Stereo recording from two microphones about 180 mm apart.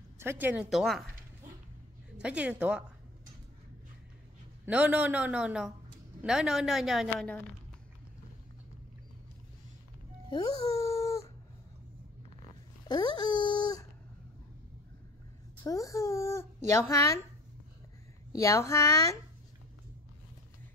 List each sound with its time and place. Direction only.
0.2 s a woman's voice: 10° right (ahead or behind)
2.2 s a man's voice: 5° right (ahead or behind)
4.6 s a man's voice: 10° right (ahead or behind)
10.7 s a sound: 20° left (ahead or behind)
12.8 s dog: 25° left (ahead or behind)
15.6 s a child's voice: 20° left (ahead or behind)
18.3 s a child's voice: 15° left (ahead or behind)